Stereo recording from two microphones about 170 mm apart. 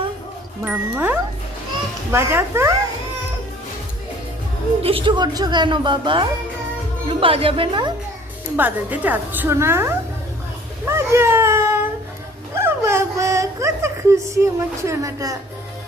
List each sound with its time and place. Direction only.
0.6 s a woman's voice: 10° right (ahead or behind)
4.8 s a woman's voice: 35° right (ahead or behind)
8.5 s a woman's voice: 10° right (ahead or behind)
10.8 s a sound: 15° right (ahead or behind)